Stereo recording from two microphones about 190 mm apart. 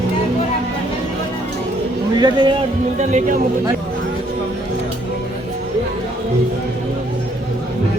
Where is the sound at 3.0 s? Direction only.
40° right (ahead or behind).